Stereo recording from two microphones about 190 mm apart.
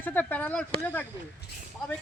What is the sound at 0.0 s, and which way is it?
Speech, 10° left (ahead or behind).